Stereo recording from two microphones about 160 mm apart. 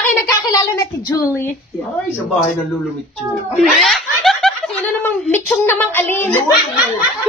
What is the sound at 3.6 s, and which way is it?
Snicker, centre (ahead or behind).